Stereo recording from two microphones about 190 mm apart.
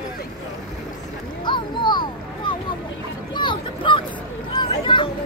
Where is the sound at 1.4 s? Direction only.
25° left (ahead or behind).